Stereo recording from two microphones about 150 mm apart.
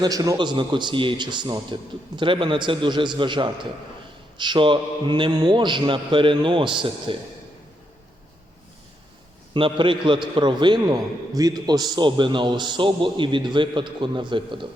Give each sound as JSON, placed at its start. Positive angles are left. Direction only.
{"t": 0.0, "sound": "a man's voice", "side_deg": -25}
{"t": 9.6, "sound": "a man's voice", "side_deg": -35}